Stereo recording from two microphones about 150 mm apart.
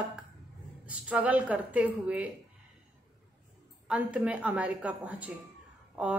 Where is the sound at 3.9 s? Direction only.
10° right (ahead or behind).